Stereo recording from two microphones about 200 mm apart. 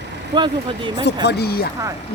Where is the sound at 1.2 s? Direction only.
55° left (ahead or behind).